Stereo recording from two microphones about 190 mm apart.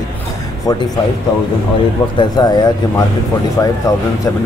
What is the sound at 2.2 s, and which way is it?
Speech, 20° left (ahead or behind).